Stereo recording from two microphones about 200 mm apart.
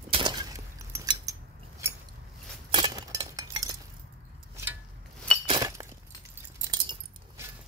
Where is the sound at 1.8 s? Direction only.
10° right (ahead or behind).